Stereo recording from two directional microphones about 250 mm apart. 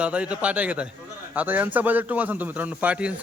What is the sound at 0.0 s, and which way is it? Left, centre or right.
A man's voice, centre.